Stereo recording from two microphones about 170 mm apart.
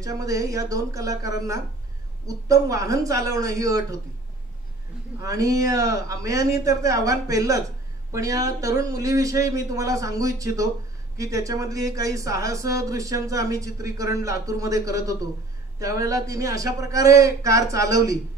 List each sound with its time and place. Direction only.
0.0 s speech: 20° right (ahead or behind)
5.2 s speech: 20° right (ahead or behind)